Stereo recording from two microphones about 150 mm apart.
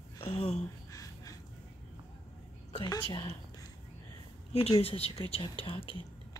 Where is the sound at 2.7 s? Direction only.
30° left (ahead or behind).